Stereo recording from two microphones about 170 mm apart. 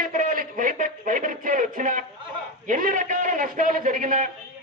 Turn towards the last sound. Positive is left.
turn(degrees=-50)  # may be behind; listen again after turning